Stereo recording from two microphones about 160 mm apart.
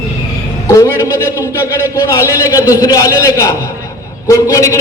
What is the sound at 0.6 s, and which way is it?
A man's voice, 20° left (ahead or behind).